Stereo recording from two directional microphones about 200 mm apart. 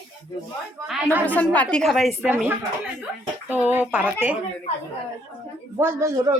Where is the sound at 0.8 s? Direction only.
5° right (ahead or behind).